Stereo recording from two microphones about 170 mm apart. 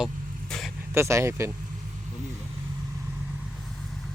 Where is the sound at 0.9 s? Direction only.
15° right (ahead or behind).